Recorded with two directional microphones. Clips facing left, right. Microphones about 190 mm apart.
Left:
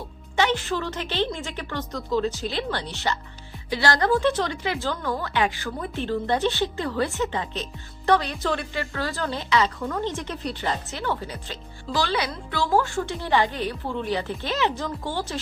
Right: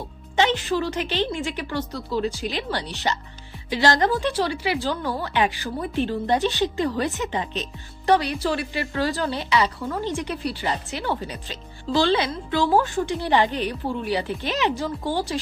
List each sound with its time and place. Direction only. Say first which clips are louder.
0.4 s speech: right 2 dB; 15° right (ahead or behind)
11.9 s speech: right 5 dB; 25° right (ahead or behind)